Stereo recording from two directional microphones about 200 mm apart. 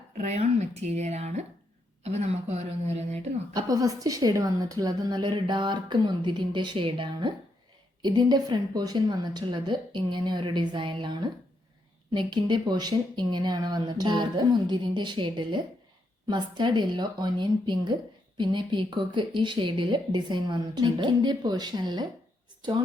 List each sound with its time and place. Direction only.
0.2 s speech: 35° right (ahead or behind)
3.5 s a woman's voice: 20° right (ahead or behind)